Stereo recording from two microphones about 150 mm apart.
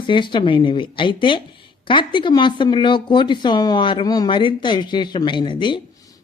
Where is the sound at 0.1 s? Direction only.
30° left (ahead or behind).